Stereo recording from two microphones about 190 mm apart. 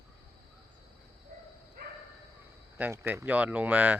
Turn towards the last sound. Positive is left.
turn(degrees=-10)  # may be behind; listen again after turning